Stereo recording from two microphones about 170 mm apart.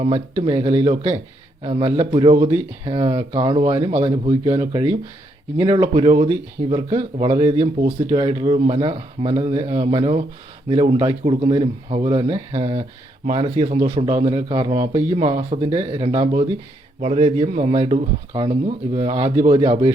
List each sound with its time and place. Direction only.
0.4 s speech: 35° right (ahead or behind)
5.6 s speech: 30° right (ahead or behind)